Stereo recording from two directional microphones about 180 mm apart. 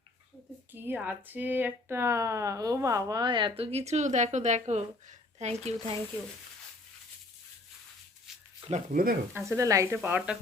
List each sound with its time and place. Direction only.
0.7 s speech: 10° right (ahead or behind); by 6.0 s 35° right (ahead or behind)
8.3 s a sound: 5° right (ahead or behind)
8.6 s speech: 40° right (ahead or behind)
9.3 s speech: 15° right (ahead or behind)